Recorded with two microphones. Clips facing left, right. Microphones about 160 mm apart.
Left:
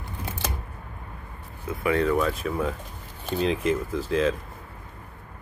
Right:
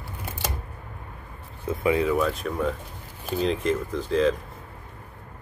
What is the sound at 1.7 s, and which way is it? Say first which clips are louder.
Speech: right 2 dB; 20° right (ahead or behind).